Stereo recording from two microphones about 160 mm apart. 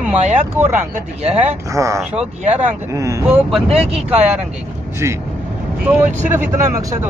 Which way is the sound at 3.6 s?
40° right (ahead or behind).